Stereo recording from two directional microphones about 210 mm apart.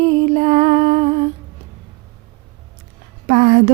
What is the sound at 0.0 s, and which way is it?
Music, 30° right (ahead or behind).